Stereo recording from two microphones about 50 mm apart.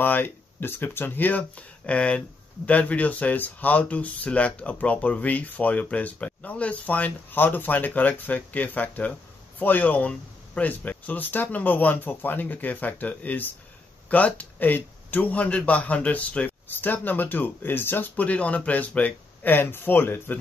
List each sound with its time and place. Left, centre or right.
0.0 s speech: left
1.9 s a man's voice: left
16.6 s speech: left